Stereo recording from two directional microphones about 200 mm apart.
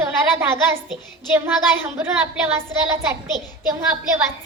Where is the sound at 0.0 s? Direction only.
10° right (ahead or behind).